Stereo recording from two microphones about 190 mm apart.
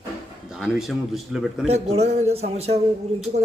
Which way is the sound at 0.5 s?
Centre (ahead or behind).